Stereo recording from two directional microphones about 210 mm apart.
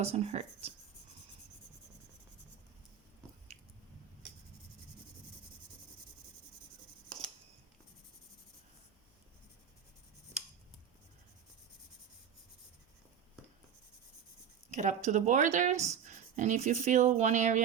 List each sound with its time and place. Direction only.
0.0 s speech: 30° right (ahead or behind)
14.7 s speech: 35° right (ahead or behind)